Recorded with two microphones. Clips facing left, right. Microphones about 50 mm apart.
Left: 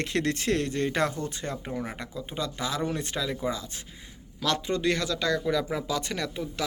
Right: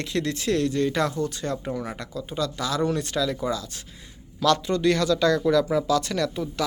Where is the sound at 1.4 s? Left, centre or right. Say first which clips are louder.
Right 4 dB; centre.